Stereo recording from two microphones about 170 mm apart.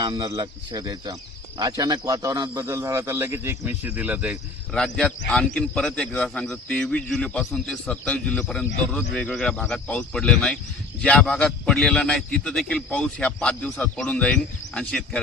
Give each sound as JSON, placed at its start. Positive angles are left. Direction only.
{"t": 0.0, "sound": "speech", "side_deg": -25}
{"t": 4.7, "sound": "a man's voice", "side_deg": 5}